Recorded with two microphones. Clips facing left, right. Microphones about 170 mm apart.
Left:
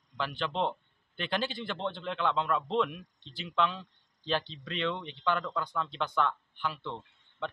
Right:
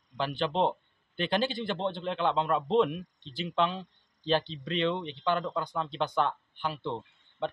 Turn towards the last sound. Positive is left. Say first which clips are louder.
# right 4 dB
turn(degrees=-30)  # may be behind; listen again after turning